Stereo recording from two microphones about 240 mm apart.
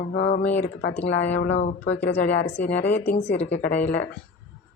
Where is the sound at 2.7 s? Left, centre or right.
Left.